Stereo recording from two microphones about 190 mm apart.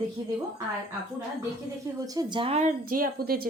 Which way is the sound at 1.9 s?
20° right (ahead or behind).